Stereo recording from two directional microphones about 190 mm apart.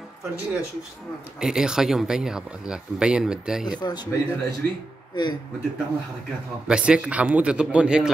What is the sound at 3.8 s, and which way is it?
Speech, 20° left (ahead or behind).